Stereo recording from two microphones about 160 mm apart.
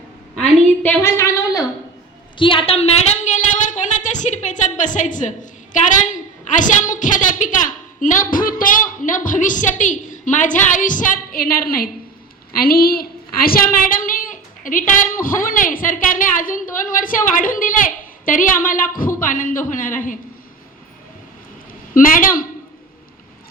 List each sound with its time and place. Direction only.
0.3 s a sound: 10° left (ahead or behind)
2.4 s a woman's voice: 35° left (ahead or behind); by 20.1 s 55° left (ahead or behind)
21.9 s a woman's voice: 60° left (ahead or behind)